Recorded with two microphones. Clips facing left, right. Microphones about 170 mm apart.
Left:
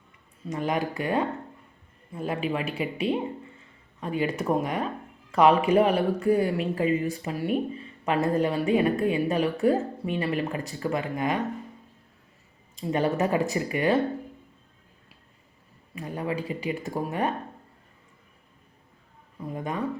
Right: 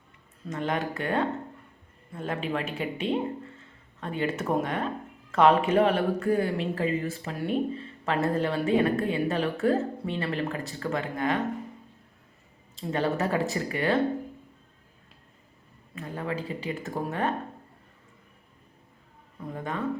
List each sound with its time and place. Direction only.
0.5 s speech: 15° left (ahead or behind)
12.9 s speech: 15° left (ahead or behind)
16.0 s speech: 15° left (ahead or behind)
19.5 s speech: 15° left (ahead or behind)